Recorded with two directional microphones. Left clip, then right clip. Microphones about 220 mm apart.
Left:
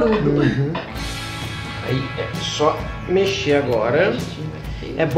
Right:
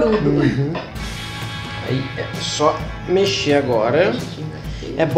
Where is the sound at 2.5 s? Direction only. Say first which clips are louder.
Right 1 dB; 20° right (ahead or behind).